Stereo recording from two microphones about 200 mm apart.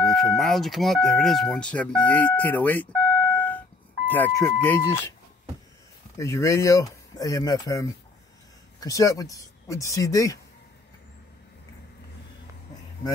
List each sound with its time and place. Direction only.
0.0 s speech: centre (ahead or behind)
3.3 s a sound: 10° left (ahead or behind)
4.1 s speech: 15° left (ahead or behind)
6.1 s speech: 15° left (ahead or behind)